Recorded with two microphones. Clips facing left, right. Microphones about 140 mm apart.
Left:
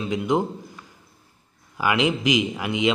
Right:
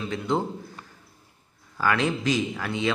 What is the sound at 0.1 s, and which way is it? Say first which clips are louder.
Speech: left 4 dB; 15° left (ahead or behind).